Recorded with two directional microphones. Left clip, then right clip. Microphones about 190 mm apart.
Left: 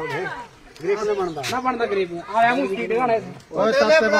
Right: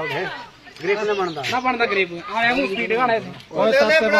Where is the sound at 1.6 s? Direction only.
15° right (ahead or behind).